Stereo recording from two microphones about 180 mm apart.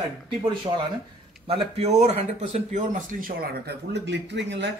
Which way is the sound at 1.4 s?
35° right (ahead or behind).